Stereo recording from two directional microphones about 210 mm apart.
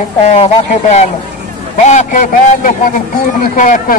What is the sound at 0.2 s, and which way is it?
Speech, 30° left (ahead or behind).